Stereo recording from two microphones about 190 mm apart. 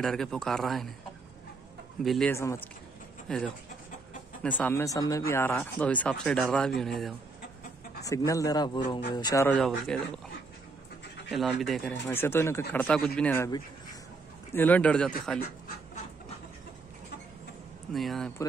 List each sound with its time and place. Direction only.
0.0 s speech: centre (ahead or behind)
2.0 s speech: centre (ahead or behind)
2.3 s speech: 15° left (ahead or behind)
3.3 s speech: centre (ahead or behind)
8.0 s speech: 15° left (ahead or behind)
9.7 s speech: centre (ahead or behind)
11.2 s speech: centre (ahead or behind)
12.1 s speech: 10° left (ahead or behind)
12.8 s speech: centre (ahead or behind)
14.5 s speech: 10° left (ahead or behind)
17.9 s speech: centre (ahead or behind)